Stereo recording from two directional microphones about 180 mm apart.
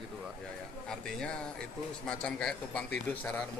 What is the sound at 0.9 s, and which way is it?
A man's voice, 5° left (ahead or behind).